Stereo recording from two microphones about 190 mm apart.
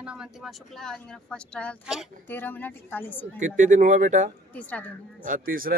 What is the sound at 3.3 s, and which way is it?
Speech, 40° right (ahead or behind).